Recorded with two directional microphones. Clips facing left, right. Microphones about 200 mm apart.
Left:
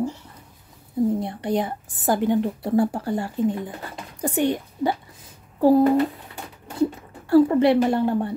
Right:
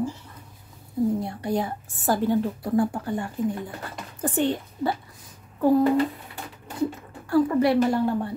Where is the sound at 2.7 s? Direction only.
35° left (ahead or behind).